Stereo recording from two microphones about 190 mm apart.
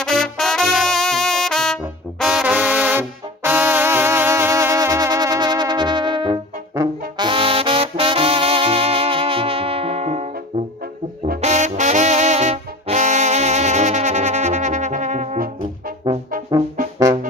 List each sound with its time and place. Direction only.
0.0 s brass instrument: centre (ahead or behind); by 10.2 s 30° right (ahead or behind)
11.4 s music: 35° right (ahead or behind)
16.0 s brass instrument: 25° right (ahead or behind)